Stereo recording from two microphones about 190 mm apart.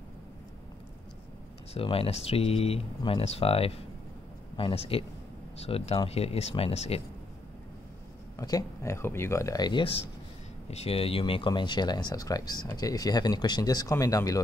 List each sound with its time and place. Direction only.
1.7 s speech: 30° left (ahead or behind)
8.4 s speech: 20° left (ahead or behind)